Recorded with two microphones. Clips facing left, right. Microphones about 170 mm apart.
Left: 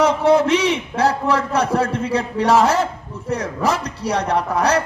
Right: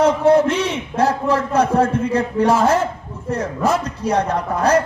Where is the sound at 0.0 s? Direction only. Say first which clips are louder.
Right 1 dB; 80° left.